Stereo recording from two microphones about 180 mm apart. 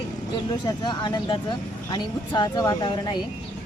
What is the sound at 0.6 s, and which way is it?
Speech, 25° left (ahead or behind).